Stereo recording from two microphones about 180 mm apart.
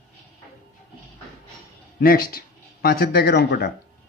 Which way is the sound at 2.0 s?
55° left (ahead or behind).